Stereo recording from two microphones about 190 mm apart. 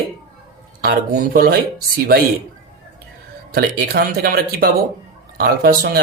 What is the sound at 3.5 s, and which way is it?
Speech, 50° right (ahead or behind).